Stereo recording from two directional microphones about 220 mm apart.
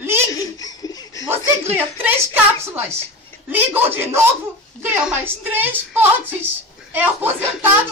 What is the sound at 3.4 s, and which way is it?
Speech, 10° right (ahead or behind).